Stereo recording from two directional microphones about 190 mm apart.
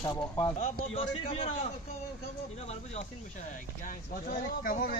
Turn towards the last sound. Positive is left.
turn(degrees=45)  # may be behind; listen again after turning